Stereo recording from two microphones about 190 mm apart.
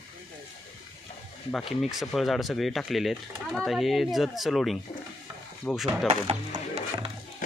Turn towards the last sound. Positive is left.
turn(degrees=-25)  # may be behind; listen again after turning